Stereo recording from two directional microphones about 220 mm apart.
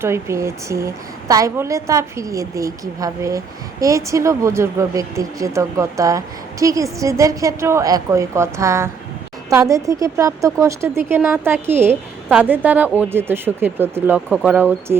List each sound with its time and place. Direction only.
0.0 s a woman's voice: 10° right (ahead or behind)
14.3 s speech: 5° left (ahead or behind)
14.9 s a woman's voice: 10° right (ahead or behind)